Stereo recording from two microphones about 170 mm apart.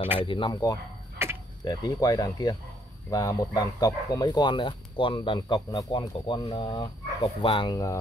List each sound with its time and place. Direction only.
0.2 s speech: 30° left (ahead or behind)
1.1 s tick-tock: 15° right (ahead or behind)
1.6 s speech: 25° left (ahead or behind)